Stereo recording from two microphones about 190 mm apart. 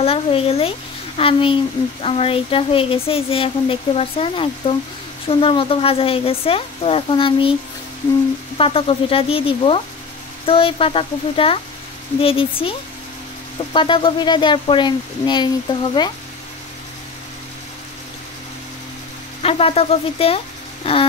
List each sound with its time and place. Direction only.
0.0 s speech: 30° left (ahead or behind)
8.5 s speech: 30° left (ahead or behind)
13.7 s speech: 25° left (ahead or behind)
19.4 s speech: 30° left (ahead or behind)